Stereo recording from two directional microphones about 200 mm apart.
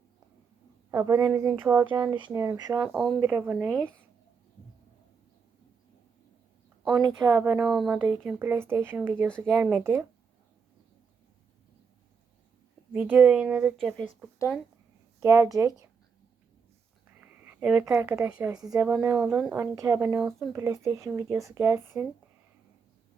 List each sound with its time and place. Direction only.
0.9 s a woman's voice: 15° right (ahead or behind)
1.8 s speech: 25° right (ahead or behind)
2.7 s speech: centre (ahead or behind)
3.2 s speech: 10° right (ahead or behind)
7.0 s speech: 15° right (ahead or behind)
7.7 s speech: centre (ahead or behind)
12.9 s speech: 10° right (ahead or behind)
15.2 s speech: 15° right (ahead or behind)
17.2 s speech: 10° right (ahead or behind)
20.1 s speech: 5° right (ahead or behind)
20.5 s speech: 15° right (ahead or behind)